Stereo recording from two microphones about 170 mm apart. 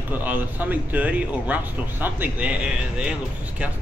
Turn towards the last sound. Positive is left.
turn(degrees=-5)  # may be behind; listen again after turning